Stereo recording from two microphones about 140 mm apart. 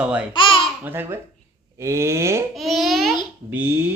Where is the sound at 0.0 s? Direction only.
10° right (ahead or behind).